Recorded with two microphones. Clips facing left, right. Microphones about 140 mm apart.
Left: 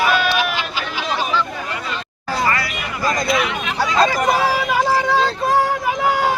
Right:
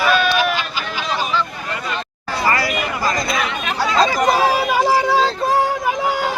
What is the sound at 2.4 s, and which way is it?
Hubbub, 35° right (ahead or behind).